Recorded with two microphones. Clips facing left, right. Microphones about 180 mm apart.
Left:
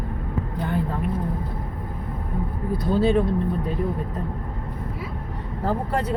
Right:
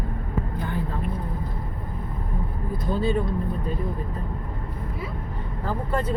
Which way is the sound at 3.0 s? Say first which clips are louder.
Left 5 dB; 80° left.